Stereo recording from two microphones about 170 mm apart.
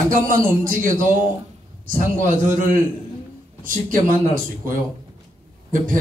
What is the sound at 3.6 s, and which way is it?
Speech, 50° right (ahead or behind).